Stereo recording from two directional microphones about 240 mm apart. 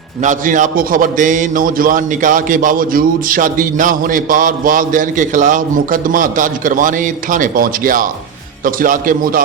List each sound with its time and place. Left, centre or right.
0.2 s a man's voice: right